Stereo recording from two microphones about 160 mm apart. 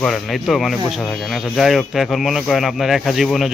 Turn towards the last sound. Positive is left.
turn(degrees=0)  # may be behind; listen again after turning